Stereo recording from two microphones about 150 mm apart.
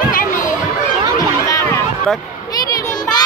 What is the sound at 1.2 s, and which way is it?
Run, 25° left (ahead or behind).